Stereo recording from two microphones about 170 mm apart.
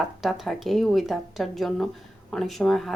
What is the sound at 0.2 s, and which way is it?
A woman's voice, centre (ahead or behind).